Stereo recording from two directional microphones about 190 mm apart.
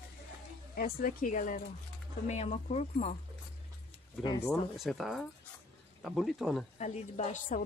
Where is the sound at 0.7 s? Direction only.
50° left (ahead or behind).